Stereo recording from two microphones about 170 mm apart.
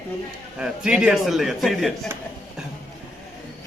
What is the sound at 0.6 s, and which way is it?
A man's voice, 5° right (ahead or behind).